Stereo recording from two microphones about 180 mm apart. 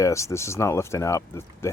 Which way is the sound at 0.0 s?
15° left (ahead or behind).